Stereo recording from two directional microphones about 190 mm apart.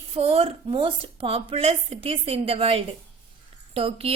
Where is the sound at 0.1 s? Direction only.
30° right (ahead or behind).